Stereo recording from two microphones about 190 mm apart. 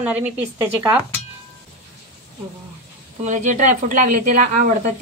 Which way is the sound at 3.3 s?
40° right (ahead or behind).